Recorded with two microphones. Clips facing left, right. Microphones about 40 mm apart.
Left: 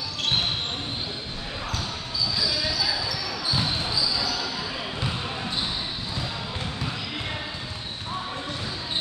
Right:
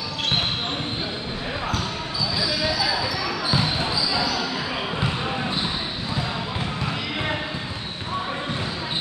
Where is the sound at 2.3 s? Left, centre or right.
Centre.